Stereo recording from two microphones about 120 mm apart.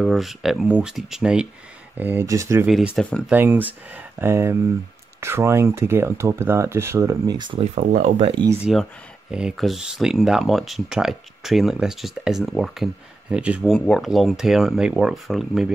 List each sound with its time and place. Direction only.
0.0 s speech: centre (ahead or behind)
2.0 s speech: 20° right (ahead or behind)
2.6 s speech: 5° right (ahead or behind)
3.0 s speech: 10° left (ahead or behind)
3.3 s speech: 15° right (ahead or behind); by 7.6 s 40° right (ahead or behind)
7.6 s speech: 75° right (ahead or behind)
9.3 s speech: 5° right (ahead or behind)
13.7 s speech: 5° left (ahead or behind)